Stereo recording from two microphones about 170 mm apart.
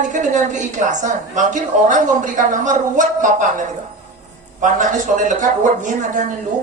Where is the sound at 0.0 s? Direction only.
45° right (ahead or behind).